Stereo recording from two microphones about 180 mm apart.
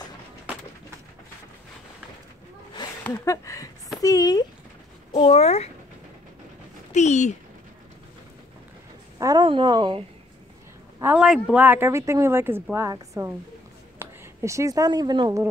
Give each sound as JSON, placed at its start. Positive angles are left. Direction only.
{"t": 3.1, "sound": "a sound", "side_deg": 15}
{"t": 4.0, "sound": "speech", "side_deg": 20}
{"t": 5.1, "sound": "speech", "side_deg": 35}
{"t": 6.9, "sound": "speech", "side_deg": 40}
{"t": 9.2, "sound": "speech", "side_deg": -25}
{"t": 11.0, "sound": "a woman's voice", "side_deg": -5}